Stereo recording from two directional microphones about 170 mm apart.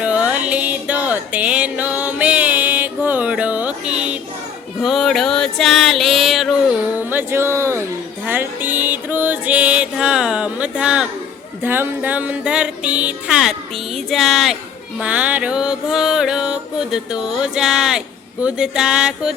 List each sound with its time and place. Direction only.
0.0 s music: 5° right (ahead or behind)
4.8 s a sound: centre (ahead or behind)
8.2 s music: 10° right (ahead or behind)